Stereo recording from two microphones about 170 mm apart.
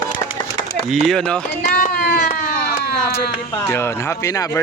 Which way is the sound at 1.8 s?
60° left (ahead or behind).